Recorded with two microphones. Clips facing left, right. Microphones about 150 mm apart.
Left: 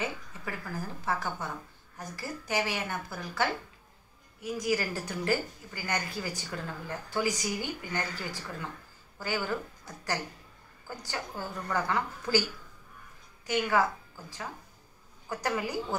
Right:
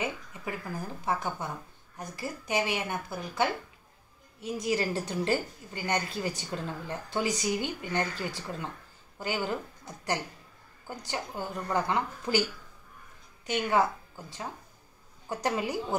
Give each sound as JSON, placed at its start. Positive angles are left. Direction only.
{"t": 0.0, "sound": "a woman's voice", "side_deg": -20}
{"t": 13.5, "sound": "a woman's voice", "side_deg": -20}